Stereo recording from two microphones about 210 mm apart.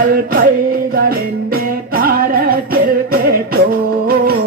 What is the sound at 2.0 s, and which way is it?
Music, 45° right (ahead or behind).